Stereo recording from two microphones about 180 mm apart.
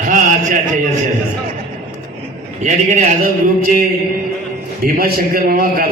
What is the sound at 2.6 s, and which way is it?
A man's voice, 40° right (ahead or behind).